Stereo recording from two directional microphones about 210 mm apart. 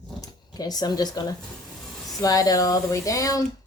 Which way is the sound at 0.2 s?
20° left (ahead or behind).